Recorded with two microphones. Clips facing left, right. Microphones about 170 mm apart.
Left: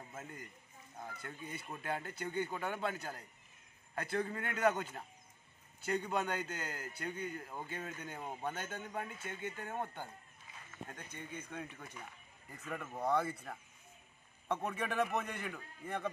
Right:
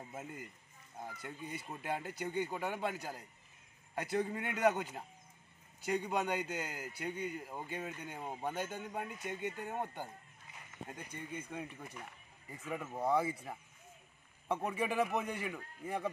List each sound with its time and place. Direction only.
1.0 s a man's voice: centre (ahead or behind)
7.1 s a man's voice: 15° right (ahead or behind)
14.5 s a man's voice: 10° right (ahead or behind)